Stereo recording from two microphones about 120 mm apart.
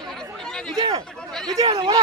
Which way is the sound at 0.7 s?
30° right (ahead or behind).